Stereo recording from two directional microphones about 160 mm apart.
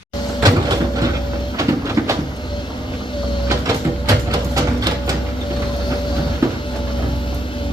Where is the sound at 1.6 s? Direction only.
20° right (ahead or behind).